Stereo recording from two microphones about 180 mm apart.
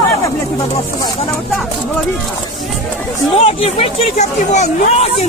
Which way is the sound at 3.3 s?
35° left (ahead or behind).